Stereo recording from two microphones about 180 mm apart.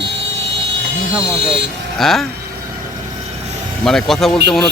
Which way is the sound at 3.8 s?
Centre (ahead or behind).